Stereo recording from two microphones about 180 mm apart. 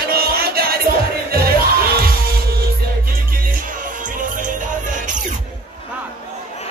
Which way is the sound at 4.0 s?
45° right (ahead or behind).